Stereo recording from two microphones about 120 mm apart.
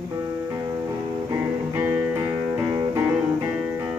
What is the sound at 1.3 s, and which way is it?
Music, 20° right (ahead or behind).